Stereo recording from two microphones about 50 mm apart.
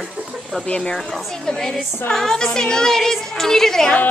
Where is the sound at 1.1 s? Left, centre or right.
Centre.